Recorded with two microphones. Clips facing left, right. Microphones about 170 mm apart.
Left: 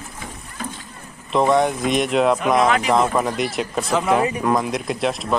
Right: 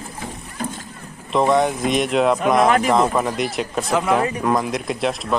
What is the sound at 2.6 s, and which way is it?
Speech, 50° right (ahead or behind).